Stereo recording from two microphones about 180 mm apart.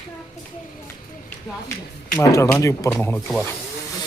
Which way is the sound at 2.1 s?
15° left (ahead or behind).